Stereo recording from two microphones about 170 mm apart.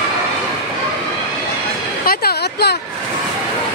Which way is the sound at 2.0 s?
65° left (ahead or behind).